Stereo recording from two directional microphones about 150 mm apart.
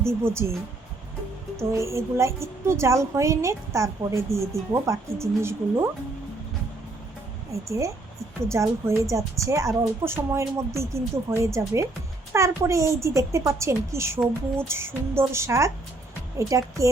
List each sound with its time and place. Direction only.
0.0 s speech: 15° right (ahead or behind)
1.5 s a woman's voice: 20° right (ahead or behind)
7.5 s a woman's voice: 20° right (ahead or behind)